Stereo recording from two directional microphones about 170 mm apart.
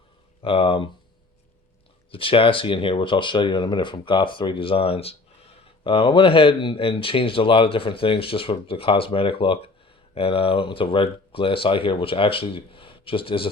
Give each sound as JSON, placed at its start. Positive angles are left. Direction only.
{"t": 0.4, "sound": "speech", "side_deg": 30}
{"t": 2.1, "sound": "speech", "side_deg": 30}